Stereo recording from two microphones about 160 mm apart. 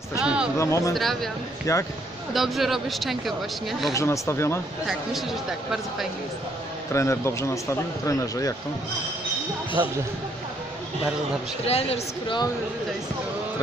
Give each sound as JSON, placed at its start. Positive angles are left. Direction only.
{"t": 0.2, "sound": "a sound", "side_deg": -5}
{"t": 0.6, "sound": "speech", "side_deg": 20}
{"t": 0.9, "sound": "speech", "side_deg": 0}
{"t": 1.7, "sound": "speech", "side_deg": 20}
{"t": 2.3, "sound": "speech", "side_deg": 0}
{"t": 3.9, "sound": "speech", "side_deg": 20}
{"t": 6.9, "sound": "speech", "side_deg": 20}
{"t": 11.6, "sound": "a man's voice", "side_deg": 40}